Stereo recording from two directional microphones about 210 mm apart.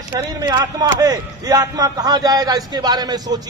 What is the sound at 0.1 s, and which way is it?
A man's voice, 20° right (ahead or behind).